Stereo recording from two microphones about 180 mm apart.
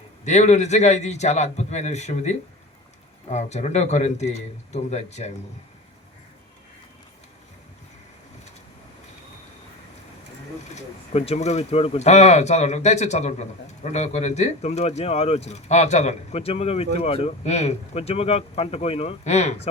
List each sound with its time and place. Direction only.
0.3 s speech: 40° left (ahead or behind)
10.6 s speech: 40° left (ahead or behind)